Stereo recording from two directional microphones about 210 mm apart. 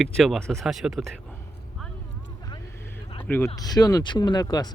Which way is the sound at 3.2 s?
10° left (ahead or behind).